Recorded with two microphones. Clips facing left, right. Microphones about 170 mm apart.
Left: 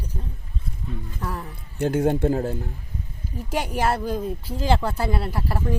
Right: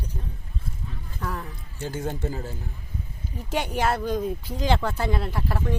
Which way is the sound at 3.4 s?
5° left (ahead or behind).